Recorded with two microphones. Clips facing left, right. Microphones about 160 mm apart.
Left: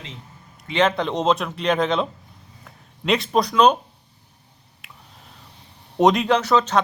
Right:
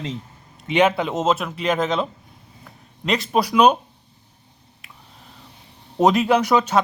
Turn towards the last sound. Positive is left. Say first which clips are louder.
# right 1 dB
turn(degrees=-10)  # may be behind; listen again after turning